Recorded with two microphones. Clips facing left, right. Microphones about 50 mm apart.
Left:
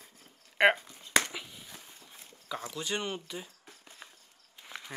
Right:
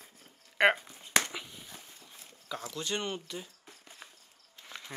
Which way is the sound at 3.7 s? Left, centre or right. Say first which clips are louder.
Right 1 dB; centre.